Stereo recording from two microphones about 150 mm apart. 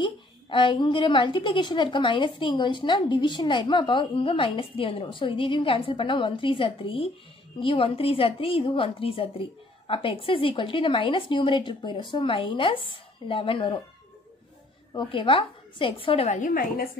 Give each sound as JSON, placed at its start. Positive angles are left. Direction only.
{"t": 0.0, "sound": "a woman's voice", "side_deg": 35}
{"t": 15.0, "sound": "a woman's voice", "side_deg": 35}
{"t": 16.3, "sound": "a woman's voice", "side_deg": 70}